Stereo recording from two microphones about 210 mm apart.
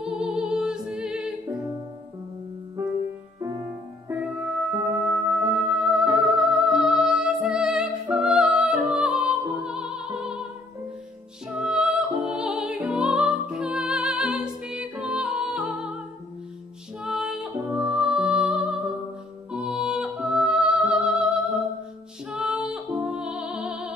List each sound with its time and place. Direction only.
0.0 s music: 5° right (ahead or behind)
2.8 s music: 15° right (ahead or behind)
5.0 s music: 5° right (ahead or behind)
11.4 s music: 5° right (ahead or behind)
17.0 s music: centre (ahead or behind)